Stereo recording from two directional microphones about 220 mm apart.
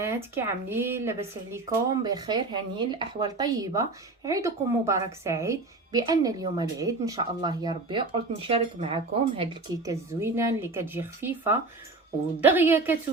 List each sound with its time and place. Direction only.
0.0 s speech: 10° right (ahead or behind)